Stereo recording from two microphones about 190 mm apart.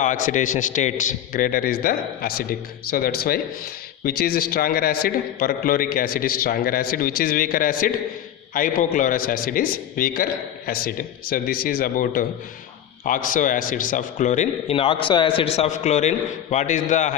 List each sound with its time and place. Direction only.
0.0 s a man's voice: 40° left (ahead or behind)